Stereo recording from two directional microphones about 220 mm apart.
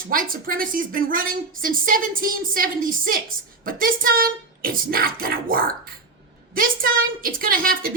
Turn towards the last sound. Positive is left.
turn(degrees=-40)  # may be behind; listen again after turning